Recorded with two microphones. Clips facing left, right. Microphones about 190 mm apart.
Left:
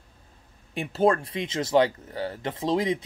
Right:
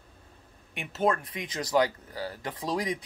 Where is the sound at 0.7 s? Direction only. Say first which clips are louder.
Left 5 dB; 30° left (ahead or behind).